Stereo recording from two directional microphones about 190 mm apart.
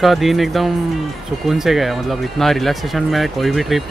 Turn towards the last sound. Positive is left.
turn(degrees=0)  # may be behind; listen again after turning